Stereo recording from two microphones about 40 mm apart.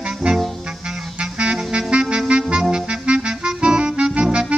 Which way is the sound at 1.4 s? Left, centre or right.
Right.